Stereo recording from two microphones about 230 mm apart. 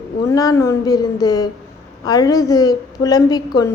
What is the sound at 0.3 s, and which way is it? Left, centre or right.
A woman's voice, centre.